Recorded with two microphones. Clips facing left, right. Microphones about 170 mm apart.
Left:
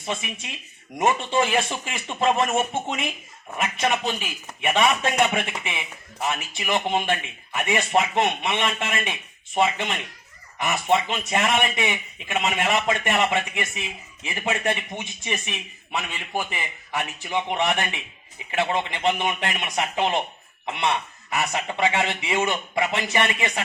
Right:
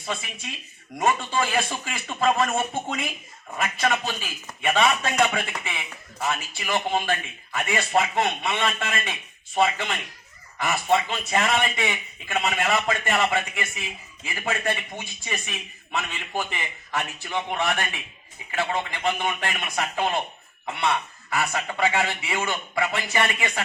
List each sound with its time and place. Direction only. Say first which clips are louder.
0.0 s a man's voice: left 2 dB; 20° left (ahead or behind)